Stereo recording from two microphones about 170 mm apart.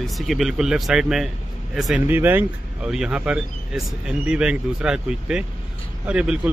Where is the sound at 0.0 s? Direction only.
Centre (ahead or behind).